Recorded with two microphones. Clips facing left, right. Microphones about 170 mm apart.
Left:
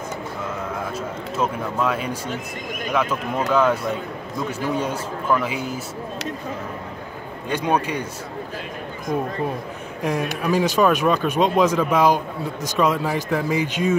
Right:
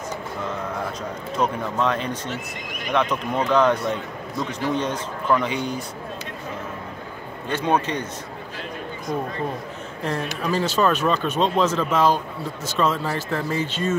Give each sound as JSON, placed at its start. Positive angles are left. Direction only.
{"t": 1.3, "sound": "speech", "side_deg": 5}
{"t": 7.4, "sound": "speech", "side_deg": 10}
{"t": 10.0, "sound": "speech", "side_deg": 15}